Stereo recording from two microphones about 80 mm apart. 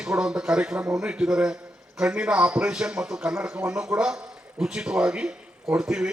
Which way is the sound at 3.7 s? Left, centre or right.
Centre.